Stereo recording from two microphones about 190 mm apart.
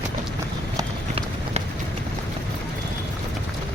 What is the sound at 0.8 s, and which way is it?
Run, 30° right (ahead or behind).